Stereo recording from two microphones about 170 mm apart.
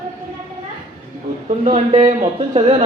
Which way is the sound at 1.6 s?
45° right (ahead or behind).